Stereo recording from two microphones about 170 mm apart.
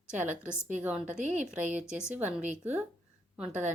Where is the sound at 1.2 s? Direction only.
50° right (ahead or behind).